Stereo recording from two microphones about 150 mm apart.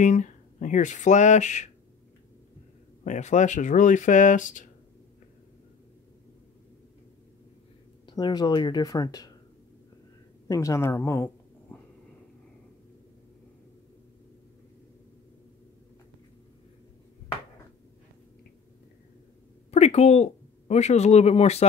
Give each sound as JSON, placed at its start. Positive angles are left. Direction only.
{"t": 0.0, "sound": "speech", "side_deg": 55}
{"t": 3.0, "sound": "speech", "side_deg": 50}
{"t": 8.1, "sound": "speech", "side_deg": 30}
{"t": 10.5, "sound": "speech", "side_deg": 20}
{"t": 19.7, "sound": "speech", "side_deg": 45}